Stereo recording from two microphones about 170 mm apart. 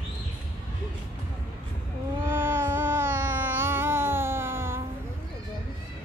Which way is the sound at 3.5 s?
10° right (ahead or behind).